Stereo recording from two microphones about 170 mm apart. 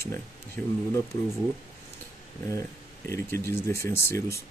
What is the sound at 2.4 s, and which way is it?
Speech, 15° left (ahead or behind).